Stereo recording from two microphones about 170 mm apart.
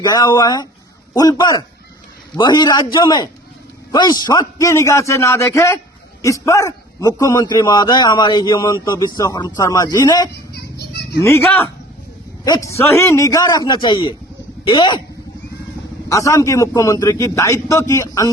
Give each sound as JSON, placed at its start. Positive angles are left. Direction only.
{"t": 0.0, "sound": "a man's voice", "side_deg": 20}
{"t": 10.5, "sound": "children playing", "side_deg": 75}
{"t": 11.2, "sound": "a man's voice", "side_deg": 15}
{"t": 16.0, "sound": "a man's voice", "side_deg": 20}